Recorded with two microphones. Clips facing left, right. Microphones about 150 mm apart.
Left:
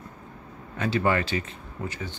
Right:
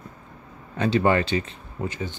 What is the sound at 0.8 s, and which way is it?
Speech, 30° right (ahead or behind).